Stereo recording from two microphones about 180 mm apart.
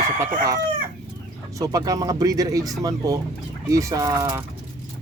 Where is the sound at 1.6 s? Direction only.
20° right (ahead or behind).